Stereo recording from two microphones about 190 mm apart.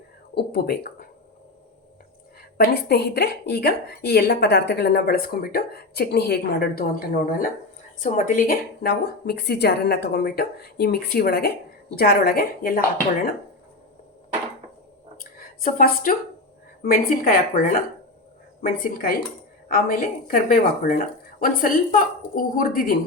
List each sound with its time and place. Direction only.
0.3 s a woman's voice: 55° left (ahead or behind)
2.6 s a woman's voice: 60° left (ahead or behind)
15.2 s a woman's voice: 50° left (ahead or behind)